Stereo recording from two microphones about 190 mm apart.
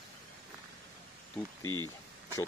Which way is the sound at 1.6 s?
90° left.